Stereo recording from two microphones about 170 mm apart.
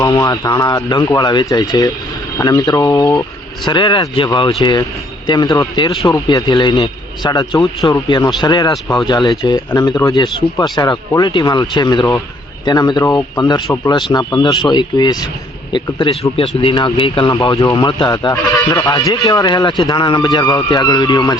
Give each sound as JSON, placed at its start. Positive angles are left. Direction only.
{"t": 0.0, "sound": "speech", "side_deg": 25}
{"t": 17.5, "sound": "speech", "side_deg": 20}